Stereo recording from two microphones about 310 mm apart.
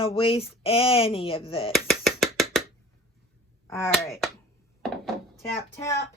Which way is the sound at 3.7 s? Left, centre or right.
Centre.